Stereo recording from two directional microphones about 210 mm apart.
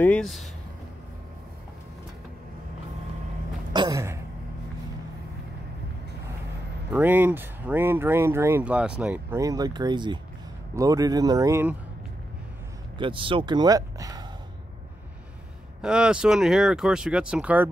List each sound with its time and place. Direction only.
0.0 s speech: 5° left (ahead or behind)
3.7 s a sound: 20° right (ahead or behind)
6.9 s speech: 10° right (ahead or behind)
12.9 s speech: 25° right (ahead or behind)
15.8 s speech: 5° right (ahead or behind)